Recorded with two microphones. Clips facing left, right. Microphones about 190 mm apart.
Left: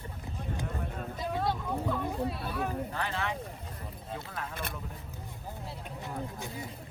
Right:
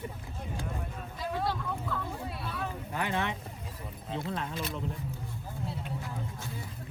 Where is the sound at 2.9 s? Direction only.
15° right (ahead or behind).